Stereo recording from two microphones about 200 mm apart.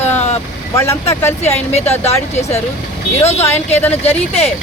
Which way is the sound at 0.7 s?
15° left (ahead or behind).